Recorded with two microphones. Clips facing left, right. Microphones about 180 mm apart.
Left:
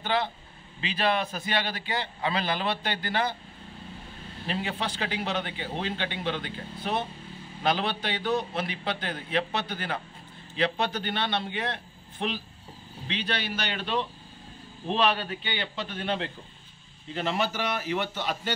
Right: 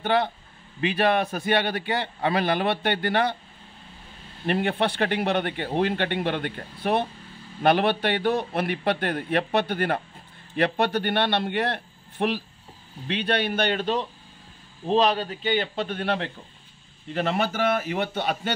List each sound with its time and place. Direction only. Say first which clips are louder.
0.0 s a man's voice: right 5 dB; 55° right (ahead or behind)
4.5 s a man's voice: right 8 dB; 60° right (ahead or behind)